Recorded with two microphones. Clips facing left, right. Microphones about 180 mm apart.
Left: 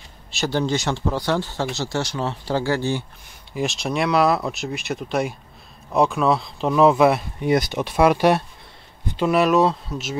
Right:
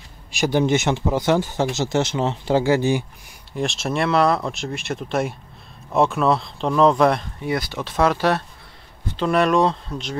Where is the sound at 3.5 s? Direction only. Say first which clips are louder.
Even; centre (ahead or behind).